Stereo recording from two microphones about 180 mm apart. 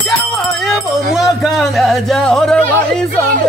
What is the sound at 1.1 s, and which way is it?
Speech, centre (ahead or behind).